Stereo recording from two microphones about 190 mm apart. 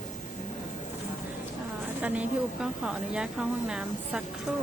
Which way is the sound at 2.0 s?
5° right (ahead or behind).